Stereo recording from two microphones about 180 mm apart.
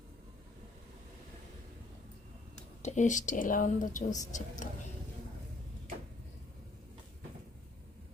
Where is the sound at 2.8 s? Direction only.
40° left (ahead or behind).